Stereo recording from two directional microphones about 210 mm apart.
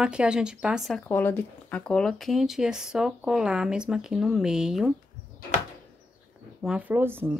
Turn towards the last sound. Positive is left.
turn(degrees=-10)  # may be behind; listen again after turning